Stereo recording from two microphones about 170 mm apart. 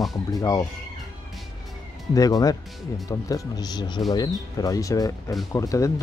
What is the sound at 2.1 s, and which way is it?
Speech, 20° left (ahead or behind).